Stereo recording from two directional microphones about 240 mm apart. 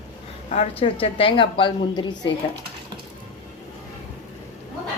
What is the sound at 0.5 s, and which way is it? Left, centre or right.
A woman's voice, left.